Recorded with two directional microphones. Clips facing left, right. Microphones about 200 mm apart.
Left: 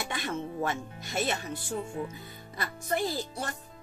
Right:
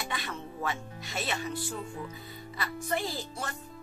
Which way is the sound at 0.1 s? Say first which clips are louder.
Left 4 dB; 45° left (ahead or behind).